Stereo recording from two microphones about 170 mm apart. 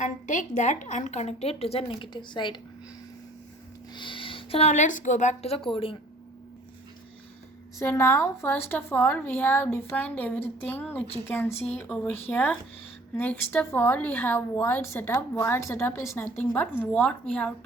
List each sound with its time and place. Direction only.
0.0 s a woman's voice: 45° left (ahead or behind); by 2.6 s 30° left (ahead or behind)
3.9 s a woman's voice: 30° left (ahead or behind)
7.8 s a woman's voice: 15° left (ahead or behind)